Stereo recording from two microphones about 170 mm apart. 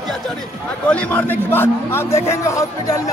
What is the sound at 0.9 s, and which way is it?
Speech, 10° left (ahead or behind).